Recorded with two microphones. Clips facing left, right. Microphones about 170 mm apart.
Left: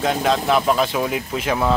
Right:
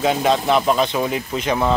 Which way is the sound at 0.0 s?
5° right (ahead or behind).